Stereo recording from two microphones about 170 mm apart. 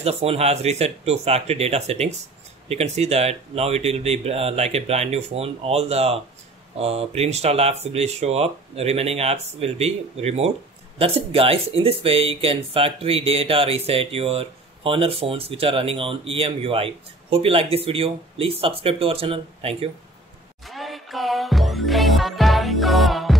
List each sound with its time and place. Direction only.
0.0 s speech: 35° right (ahead or behind)
20.6 s music: centre (ahead or behind)